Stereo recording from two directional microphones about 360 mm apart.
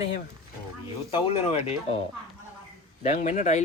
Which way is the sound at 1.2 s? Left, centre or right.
Centre.